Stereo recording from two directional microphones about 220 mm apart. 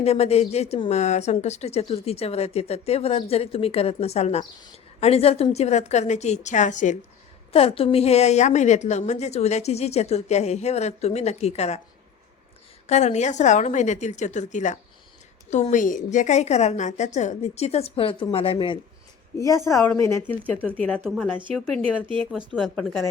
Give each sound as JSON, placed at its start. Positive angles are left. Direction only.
{"t": 0.0, "sound": "speech", "side_deg": 30}
{"t": 12.9, "sound": "a woman's voice", "side_deg": 30}
{"t": 19.6, "sound": "a woman's voice", "side_deg": 10}
{"t": 21.8, "sound": "speech", "side_deg": -25}
{"t": 22.5, "sound": "speech", "side_deg": 0}